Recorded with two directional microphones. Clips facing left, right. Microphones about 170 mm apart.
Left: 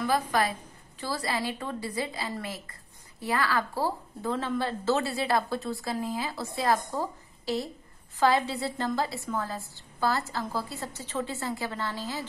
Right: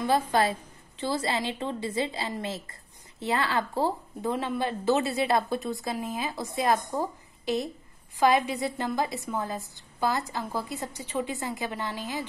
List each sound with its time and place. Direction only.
0.0 s a woman's voice: 25° right (ahead or behind)